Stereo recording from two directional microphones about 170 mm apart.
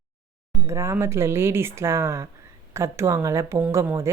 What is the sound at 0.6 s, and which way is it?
A woman's voice, 15° right (ahead or behind).